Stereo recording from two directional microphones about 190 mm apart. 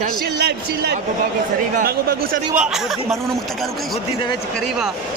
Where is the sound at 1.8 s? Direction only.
50° right (ahead or behind).